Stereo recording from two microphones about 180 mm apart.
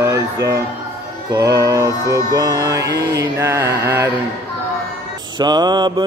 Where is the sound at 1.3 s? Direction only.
20° right (ahead or behind).